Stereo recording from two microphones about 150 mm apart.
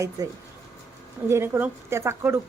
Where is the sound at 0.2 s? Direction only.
25° right (ahead or behind).